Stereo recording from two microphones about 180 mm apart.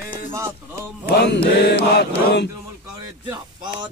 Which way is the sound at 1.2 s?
70° left (ahead or behind).